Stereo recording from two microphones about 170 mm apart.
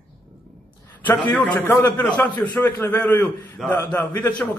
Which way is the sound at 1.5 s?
10° left (ahead or behind).